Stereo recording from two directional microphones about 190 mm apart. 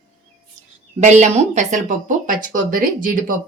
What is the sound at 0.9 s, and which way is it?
Speech, 40° right (ahead or behind).